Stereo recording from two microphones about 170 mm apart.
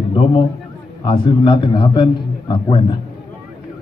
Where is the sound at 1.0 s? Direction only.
30° left (ahead or behind).